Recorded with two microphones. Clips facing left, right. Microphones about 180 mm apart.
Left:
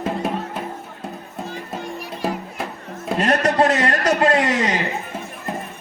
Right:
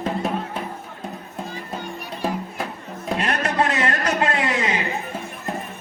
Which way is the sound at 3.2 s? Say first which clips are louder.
Left 6 dB; 40° left (ahead or behind).